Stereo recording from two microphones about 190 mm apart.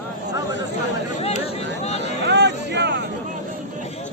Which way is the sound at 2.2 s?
65° right (ahead or behind).